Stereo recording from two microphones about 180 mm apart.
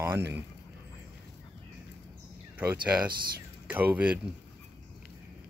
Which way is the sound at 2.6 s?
5° right (ahead or behind).